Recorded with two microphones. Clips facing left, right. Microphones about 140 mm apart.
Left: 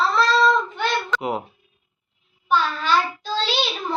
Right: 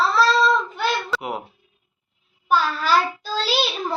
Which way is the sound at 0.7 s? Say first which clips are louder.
Even; 5° right (ahead or behind).